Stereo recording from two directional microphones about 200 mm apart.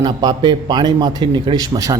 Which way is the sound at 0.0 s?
20° right (ahead or behind).